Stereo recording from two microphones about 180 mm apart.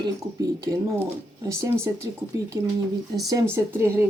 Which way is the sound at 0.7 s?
15° right (ahead or behind).